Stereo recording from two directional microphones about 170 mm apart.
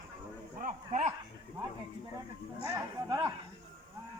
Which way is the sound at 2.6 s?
20° right (ahead or behind).